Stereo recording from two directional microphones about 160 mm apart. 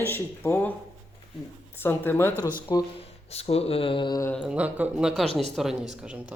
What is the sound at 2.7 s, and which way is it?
Speech, 25° left (ahead or behind).